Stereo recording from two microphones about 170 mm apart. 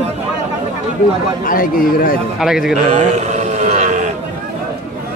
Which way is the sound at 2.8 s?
45° right (ahead or behind).